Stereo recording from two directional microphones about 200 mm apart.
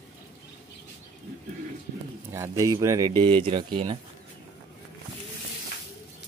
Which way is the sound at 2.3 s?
15° right (ahead or behind).